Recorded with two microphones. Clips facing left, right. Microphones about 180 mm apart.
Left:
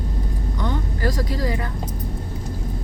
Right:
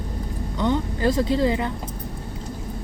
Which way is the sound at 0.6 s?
20° right (ahead or behind).